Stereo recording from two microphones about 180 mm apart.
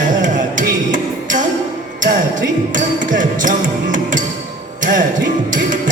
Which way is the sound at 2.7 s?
45° right (ahead or behind).